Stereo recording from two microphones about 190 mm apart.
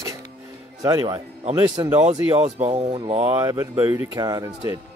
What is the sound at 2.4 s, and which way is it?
Speech, 35° right (ahead or behind).